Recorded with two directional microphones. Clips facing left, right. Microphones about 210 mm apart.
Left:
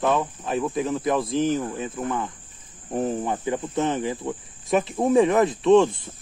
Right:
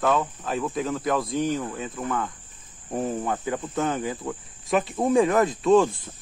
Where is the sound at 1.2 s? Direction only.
Centre (ahead or behind).